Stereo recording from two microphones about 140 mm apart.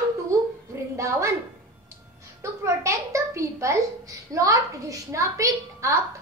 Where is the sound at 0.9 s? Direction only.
20° right (ahead or behind).